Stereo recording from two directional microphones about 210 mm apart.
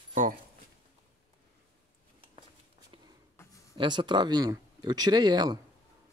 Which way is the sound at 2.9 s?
25° right (ahead or behind).